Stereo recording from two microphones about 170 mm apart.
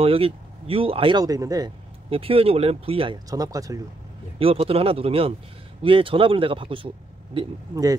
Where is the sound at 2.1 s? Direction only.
35° right (ahead or behind).